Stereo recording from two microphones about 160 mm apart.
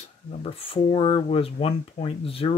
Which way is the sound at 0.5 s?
40° left (ahead or behind).